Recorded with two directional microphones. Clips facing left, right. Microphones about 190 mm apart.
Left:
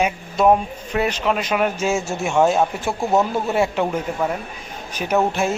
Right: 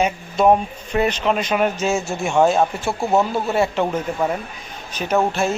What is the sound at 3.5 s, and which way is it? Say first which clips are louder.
A man's voice: even; 10° left (ahead or behind).